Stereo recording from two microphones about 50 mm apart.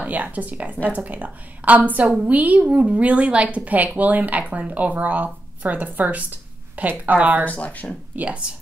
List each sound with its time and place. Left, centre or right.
0.0 s a woman's voice: right
7.4 s speech: left
8.2 s a woman's voice: right